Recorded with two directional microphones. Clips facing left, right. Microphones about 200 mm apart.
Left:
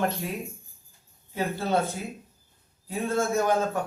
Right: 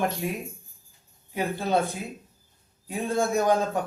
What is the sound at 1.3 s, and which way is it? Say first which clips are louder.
A man's voice: right 1 dB; 15° right (ahead or behind).